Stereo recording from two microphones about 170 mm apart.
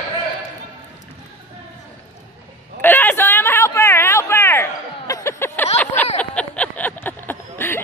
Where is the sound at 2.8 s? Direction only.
10° left (ahead or behind).